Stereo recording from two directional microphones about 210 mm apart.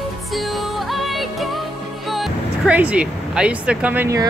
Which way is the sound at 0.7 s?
Centre (ahead or behind).